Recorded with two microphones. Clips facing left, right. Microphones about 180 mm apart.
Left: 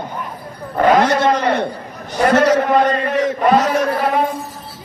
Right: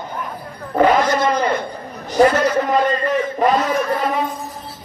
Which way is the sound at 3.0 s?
70° left (ahead or behind).